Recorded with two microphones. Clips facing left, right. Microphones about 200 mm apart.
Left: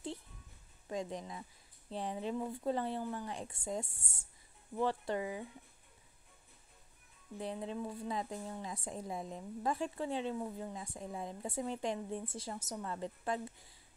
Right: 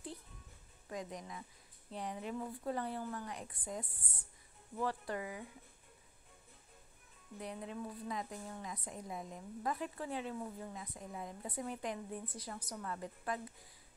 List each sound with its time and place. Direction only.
0.8 s a woman's voice: 25° left (ahead or behind)
7.3 s a woman's voice: 30° left (ahead or behind)